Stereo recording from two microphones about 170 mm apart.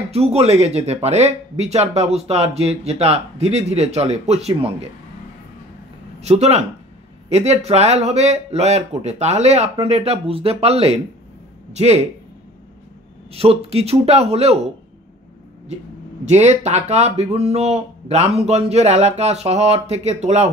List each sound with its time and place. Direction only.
0.1 s speech: 35° right (ahead or behind)
6.2 s speech: 40° right (ahead or behind)
13.3 s speech: 35° right (ahead or behind)
16.3 s speech: 40° right (ahead or behind)